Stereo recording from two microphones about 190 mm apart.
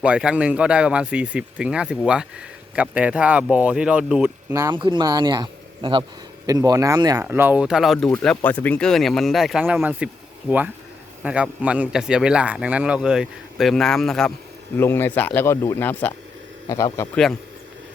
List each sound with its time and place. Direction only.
0.0 s speech: 5° right (ahead or behind)
11.2 s a man's voice: 5° right (ahead or behind); by 17.1 s 15° left (ahead or behind)